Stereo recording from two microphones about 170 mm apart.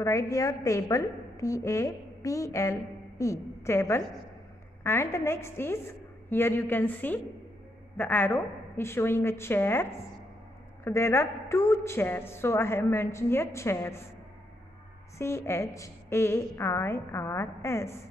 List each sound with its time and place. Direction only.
0.0 s a woman's voice: 20° left (ahead or behind)
15.1 s a woman's voice: 15° left (ahead or behind)